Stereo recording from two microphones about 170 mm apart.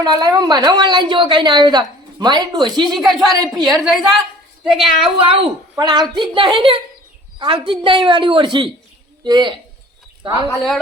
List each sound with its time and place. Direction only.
0.0 s a woman's voice: 25° right (ahead or behind)
2.9 s speech: centre (ahead or behind)
5.1 s a woman's voice: 35° right (ahead or behind)
10.5 s speech: centre (ahead or behind)